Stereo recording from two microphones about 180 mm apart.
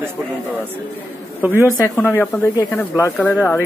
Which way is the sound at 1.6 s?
15° left (ahead or behind).